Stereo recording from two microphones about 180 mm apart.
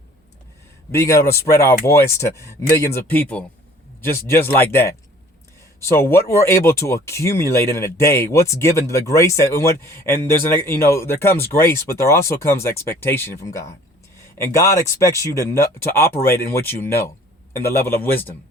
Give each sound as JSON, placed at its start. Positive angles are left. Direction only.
{"t": 0.9, "sound": "speech", "side_deg": 15}
{"t": 6.0, "sound": "speech", "side_deg": 15}